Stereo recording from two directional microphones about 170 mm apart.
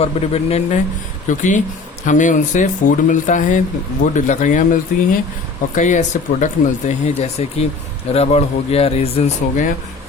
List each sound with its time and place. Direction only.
0.0 s speech: 35° left (ahead or behind)